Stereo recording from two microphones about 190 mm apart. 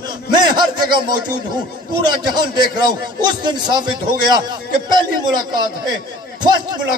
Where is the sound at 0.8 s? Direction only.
20° right (ahead or behind).